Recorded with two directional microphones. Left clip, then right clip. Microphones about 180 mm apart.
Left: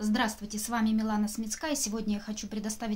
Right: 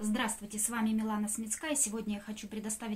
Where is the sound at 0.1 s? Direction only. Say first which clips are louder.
Left 5 dB; 30° left (ahead or behind).